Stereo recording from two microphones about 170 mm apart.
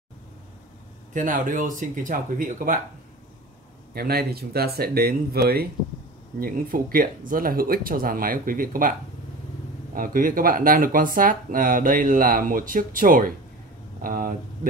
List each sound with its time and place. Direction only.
1.1 s speech: 50° right (ahead or behind)
3.9 s speech: 65° right (ahead or behind)
9.9 s speech: 55° right (ahead or behind)